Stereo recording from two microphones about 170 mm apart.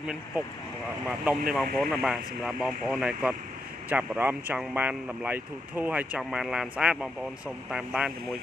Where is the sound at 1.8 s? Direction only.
Centre (ahead or behind).